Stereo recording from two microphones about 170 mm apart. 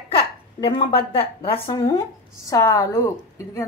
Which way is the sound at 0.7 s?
25° left (ahead or behind).